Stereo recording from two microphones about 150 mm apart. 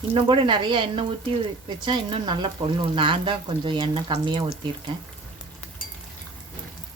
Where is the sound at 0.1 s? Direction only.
35° right (ahead or behind).